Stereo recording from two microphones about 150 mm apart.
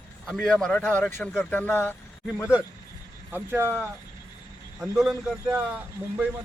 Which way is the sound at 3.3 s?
15° right (ahead or behind).